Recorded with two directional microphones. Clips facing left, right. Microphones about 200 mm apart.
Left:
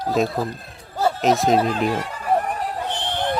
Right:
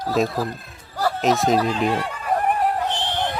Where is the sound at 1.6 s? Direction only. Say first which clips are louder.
Even; 50° left (ahead or behind).